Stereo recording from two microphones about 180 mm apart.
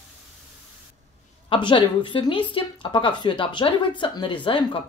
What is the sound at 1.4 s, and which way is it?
A woman's voice, 30° left (ahead or behind).